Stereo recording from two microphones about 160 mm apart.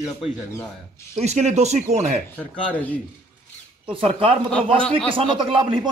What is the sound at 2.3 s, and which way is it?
Speech, 10° left (ahead or behind).